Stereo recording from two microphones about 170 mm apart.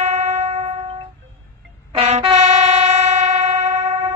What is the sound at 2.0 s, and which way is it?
Train, 40° right (ahead or behind).